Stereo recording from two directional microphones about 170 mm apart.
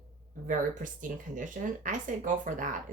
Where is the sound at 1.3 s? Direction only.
50° right (ahead or behind).